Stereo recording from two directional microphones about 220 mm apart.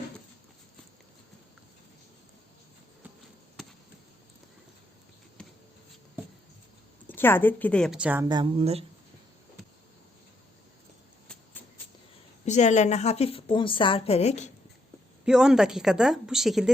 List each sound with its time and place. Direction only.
3.6 s basketball bounce: centre (ahead or behind)
5.4 s a sound: 5° left (ahead or behind)
7.1 s a woman's voice: 10° left (ahead or behind); by 8.3 s 5° right (ahead or behind)
8.3 s speech: 25° right (ahead or behind)
12.5 s a woman's voice: 30° left (ahead or behind)
15.2 s a woman's voice: 5° right (ahead or behind)